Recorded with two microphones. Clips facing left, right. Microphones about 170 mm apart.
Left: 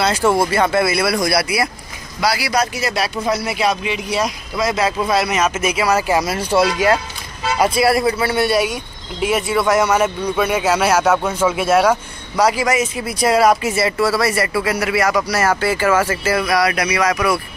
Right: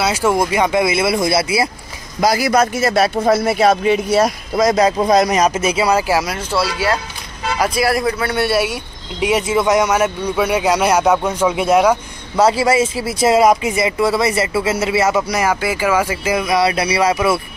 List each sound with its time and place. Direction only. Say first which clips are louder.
0.0 s speech: even; 10° right (ahead or behind); by 1.7 s 25° right (ahead or behind)
2.1 s speech: right 4 dB; 45° right (ahead or behind)
5.9 s speech: left 1 dB; 10° right (ahead or behind)
6.5 s speech: left 4 dB; 15° left (ahead or behind)
7.5 s a man's voice: left 2 dB; centre (ahead or behind)
9.2 s speech: right 2 dB; 20° right (ahead or behind)
12.4 s speech: right 3 dB; 30° right (ahead or behind)